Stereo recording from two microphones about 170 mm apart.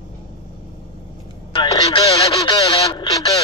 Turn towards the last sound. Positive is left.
turn(degrees=25)  # may be behind; listen again after turning